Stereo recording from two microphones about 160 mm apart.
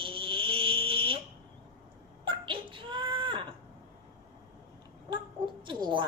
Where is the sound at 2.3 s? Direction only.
30° right (ahead or behind).